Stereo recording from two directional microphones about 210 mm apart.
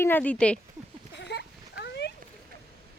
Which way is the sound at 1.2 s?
55° left (ahead or behind).